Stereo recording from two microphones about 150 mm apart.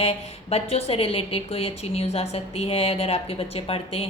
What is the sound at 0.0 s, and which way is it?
A woman's voice, 40° left (ahead or behind).